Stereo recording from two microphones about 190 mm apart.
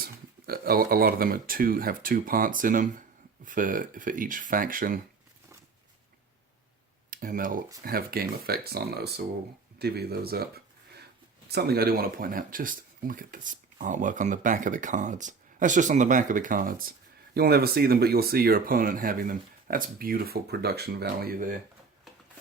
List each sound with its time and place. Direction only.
0.0 s speech: 50° right (ahead or behind)
7.1 s speech: 45° right (ahead or behind)